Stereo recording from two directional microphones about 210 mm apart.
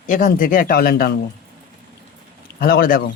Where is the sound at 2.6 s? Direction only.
45° left (ahead or behind).